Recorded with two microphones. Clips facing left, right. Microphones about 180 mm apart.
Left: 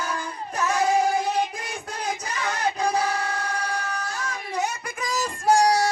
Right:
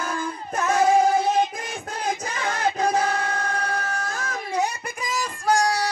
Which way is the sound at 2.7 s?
50° right (ahead or behind).